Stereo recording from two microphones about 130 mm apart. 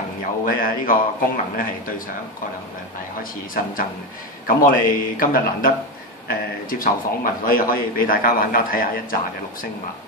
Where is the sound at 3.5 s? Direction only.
90° left.